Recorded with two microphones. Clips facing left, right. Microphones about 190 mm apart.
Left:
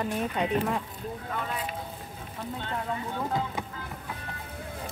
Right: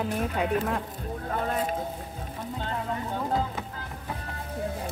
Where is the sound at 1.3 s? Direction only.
45° right (ahead or behind).